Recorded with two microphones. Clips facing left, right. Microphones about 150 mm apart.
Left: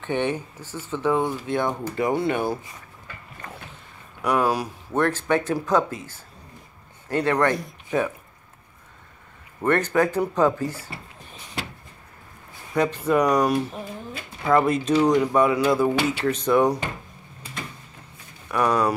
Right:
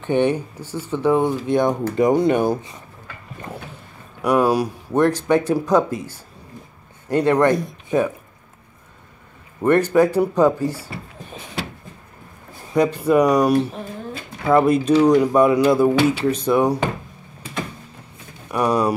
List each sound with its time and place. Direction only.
0.0 s speech: 15° right (ahead or behind)
4.2 s speech: 10° right (ahead or behind)
9.6 s speech: 10° right (ahead or behind)
12.7 s speech: 10° right (ahead or behind)
18.5 s speech: 10° right (ahead or behind)